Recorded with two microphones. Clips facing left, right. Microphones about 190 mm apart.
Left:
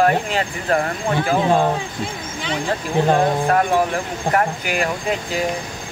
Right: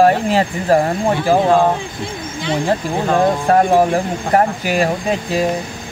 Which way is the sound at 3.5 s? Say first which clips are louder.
Right 5 dB; 40° right (ahead or behind).